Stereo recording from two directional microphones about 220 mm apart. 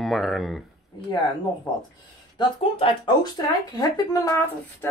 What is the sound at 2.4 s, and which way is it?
Speech, 25° left (ahead or behind).